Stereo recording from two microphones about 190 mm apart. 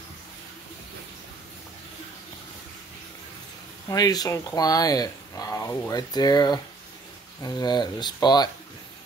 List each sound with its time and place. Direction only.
3.9 s speech: 20° left (ahead or behind)